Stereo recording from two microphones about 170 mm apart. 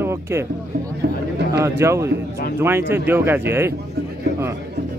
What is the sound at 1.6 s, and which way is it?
Speech, 15° right (ahead or behind).